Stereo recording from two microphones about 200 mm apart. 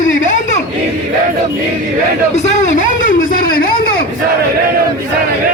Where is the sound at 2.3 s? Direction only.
35° left (ahead or behind).